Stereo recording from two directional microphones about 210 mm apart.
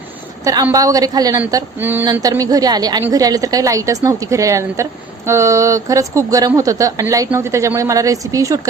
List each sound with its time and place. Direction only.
0.4 s speech: 15° right (ahead or behind)